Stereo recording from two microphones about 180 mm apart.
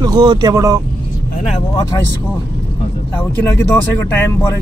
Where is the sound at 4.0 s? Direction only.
15° left (ahead or behind).